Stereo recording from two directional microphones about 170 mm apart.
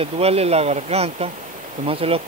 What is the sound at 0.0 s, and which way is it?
Speech, 35° right (ahead or behind).